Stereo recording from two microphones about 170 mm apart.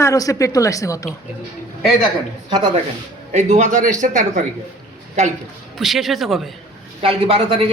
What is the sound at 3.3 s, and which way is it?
A man's voice, 45° right (ahead or behind).